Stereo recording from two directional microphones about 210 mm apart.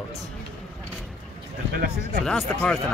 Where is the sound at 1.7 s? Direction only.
45° right (ahead or behind).